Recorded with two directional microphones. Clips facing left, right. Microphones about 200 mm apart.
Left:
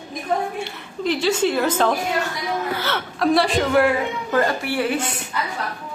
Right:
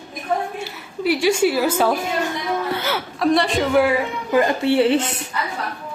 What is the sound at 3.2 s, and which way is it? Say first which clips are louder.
Speech: even; 5° left (ahead or behind).